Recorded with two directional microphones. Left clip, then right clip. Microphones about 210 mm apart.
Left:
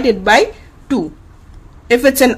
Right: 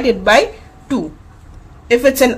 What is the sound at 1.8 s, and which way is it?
Speech, 25° left (ahead or behind).